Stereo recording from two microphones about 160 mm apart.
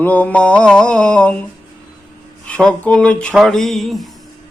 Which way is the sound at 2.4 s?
5° left (ahead or behind).